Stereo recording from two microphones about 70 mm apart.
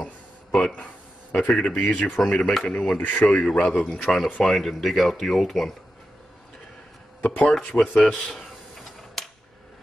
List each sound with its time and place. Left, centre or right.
0.0 s a sound: centre
1.6 s speech: left
2.2 s speech: centre
7.2 s speech: left
7.4 s speech: centre
7.9 s speech: centre
8.4 s a sound: centre